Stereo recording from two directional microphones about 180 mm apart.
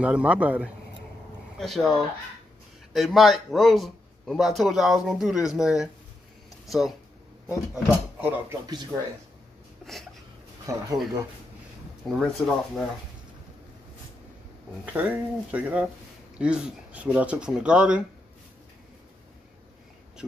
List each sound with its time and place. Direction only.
0.0 s speech: 5° right (ahead or behind)
7.4 s speech: 10° right (ahead or behind)
9.8 s a sound: centre (ahead or behind)
10.7 s speech: 15° right (ahead or behind)
12.1 s speech: centre (ahead or behind)
14.9 s speech: 10° right (ahead or behind)